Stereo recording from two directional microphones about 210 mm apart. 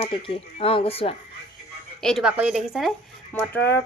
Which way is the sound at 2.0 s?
Centre (ahead or behind).